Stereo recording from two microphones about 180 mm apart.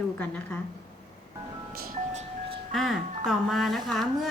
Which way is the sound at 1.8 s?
45° right (ahead or behind).